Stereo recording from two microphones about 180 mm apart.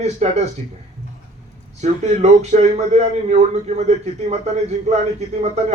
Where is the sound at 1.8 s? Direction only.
40° right (ahead or behind).